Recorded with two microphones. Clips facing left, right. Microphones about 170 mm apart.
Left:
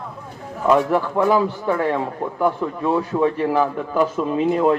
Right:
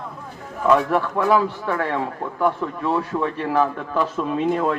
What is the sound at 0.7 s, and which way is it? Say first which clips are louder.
A man's voice: left 1 dB; 20° left (ahead or behind).